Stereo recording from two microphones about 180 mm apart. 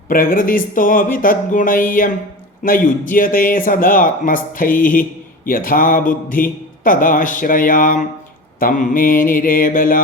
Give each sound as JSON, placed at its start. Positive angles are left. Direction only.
{"t": 0.1, "sound": "speech", "side_deg": 50}